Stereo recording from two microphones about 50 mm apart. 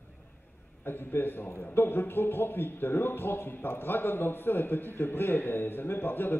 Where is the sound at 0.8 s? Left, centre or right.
Left.